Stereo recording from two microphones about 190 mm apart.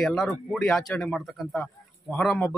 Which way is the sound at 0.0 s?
Centre (ahead or behind).